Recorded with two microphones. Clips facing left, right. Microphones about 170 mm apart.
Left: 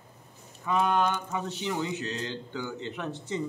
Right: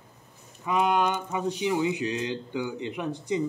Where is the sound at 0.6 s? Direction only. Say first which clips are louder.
Right 1 dB; 15° right (ahead or behind).